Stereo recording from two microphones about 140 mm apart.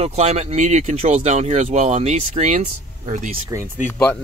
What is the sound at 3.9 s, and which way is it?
Speech, 15° left (ahead or behind).